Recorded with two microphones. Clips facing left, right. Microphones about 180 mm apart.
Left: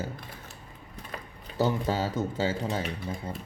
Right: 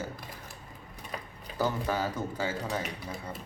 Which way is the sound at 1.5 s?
25° left (ahead or behind).